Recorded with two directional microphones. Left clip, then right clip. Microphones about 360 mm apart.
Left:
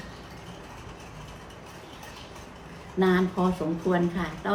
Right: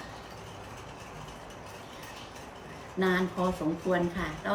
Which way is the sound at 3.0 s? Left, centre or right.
Centre.